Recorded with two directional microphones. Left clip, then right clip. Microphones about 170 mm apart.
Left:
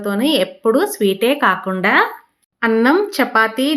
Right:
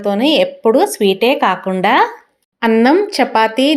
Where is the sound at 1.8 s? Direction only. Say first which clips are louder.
Right 4 dB; 20° right (ahead or behind).